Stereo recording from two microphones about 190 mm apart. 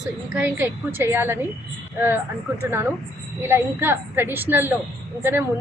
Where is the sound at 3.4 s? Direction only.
10° right (ahead or behind).